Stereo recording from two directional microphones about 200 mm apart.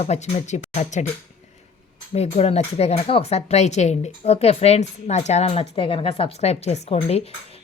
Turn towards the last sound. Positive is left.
turn(degrees=30)  # may be behind; listen again after turning